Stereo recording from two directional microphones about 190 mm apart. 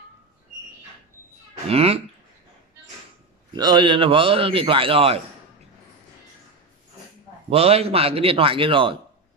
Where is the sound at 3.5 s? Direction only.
25° right (ahead or behind).